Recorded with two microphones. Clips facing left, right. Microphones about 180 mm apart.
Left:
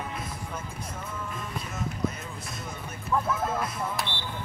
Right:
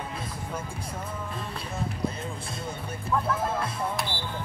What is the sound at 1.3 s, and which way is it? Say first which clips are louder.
Music: right 1 dB; 30° right (ahead or behind).